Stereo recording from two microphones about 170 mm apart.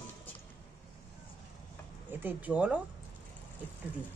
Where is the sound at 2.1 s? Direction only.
10° right (ahead or behind).